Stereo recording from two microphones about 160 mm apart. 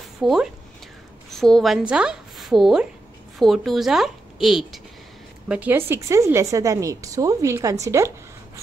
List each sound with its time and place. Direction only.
0.2 s a woman's voice: centre (ahead or behind); by 8.1 s 20° right (ahead or behind)